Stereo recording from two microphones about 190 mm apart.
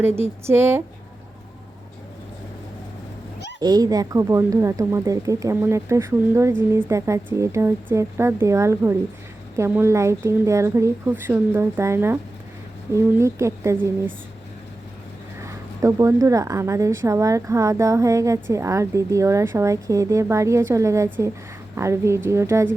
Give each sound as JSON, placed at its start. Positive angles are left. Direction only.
{"t": 0.0, "sound": "a woman's voice", "side_deg": -10}
{"t": 3.6, "sound": "a woman's voice", "side_deg": -20}
{"t": 15.4, "sound": "a woman's voice", "side_deg": -15}